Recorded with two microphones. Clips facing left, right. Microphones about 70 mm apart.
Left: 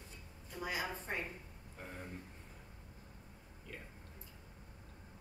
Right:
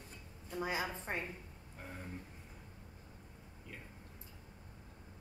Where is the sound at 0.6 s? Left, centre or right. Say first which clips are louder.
Right 2 dB; right.